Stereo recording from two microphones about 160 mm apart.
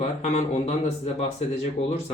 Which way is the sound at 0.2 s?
45° left (ahead or behind).